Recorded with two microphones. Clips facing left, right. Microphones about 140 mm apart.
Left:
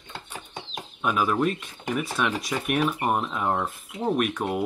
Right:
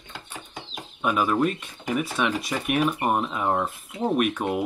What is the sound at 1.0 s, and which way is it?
Speech, centre (ahead or behind).